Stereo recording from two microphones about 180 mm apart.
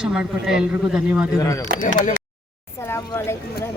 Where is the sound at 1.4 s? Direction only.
15° left (ahead or behind).